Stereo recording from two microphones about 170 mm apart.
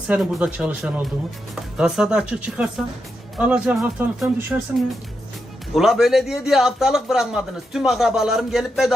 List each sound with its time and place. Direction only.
0.1 s a man's voice: 5° right (ahead or behind)
5.7 s a man's voice: centre (ahead or behind)